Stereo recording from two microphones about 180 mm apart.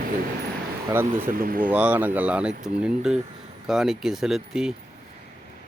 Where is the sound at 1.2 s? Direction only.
50° right (ahead or behind).